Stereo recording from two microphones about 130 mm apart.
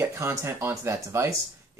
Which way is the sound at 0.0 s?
20° right (ahead or behind).